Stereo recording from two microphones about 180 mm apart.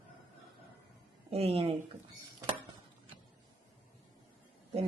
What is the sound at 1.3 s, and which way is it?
Speech, 35° right (ahead or behind).